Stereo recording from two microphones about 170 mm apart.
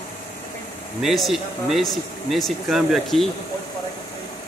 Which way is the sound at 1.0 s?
Centre (ahead or behind).